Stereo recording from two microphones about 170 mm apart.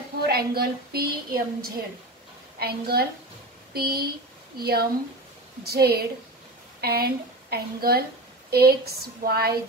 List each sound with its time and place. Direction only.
0.3 s a woman's voice: 65° right (ahead or behind)